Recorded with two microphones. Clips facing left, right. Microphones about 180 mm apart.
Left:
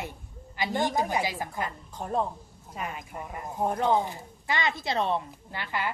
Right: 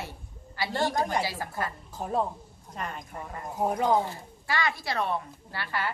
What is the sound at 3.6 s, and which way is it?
Speech, 5° right (ahead or behind).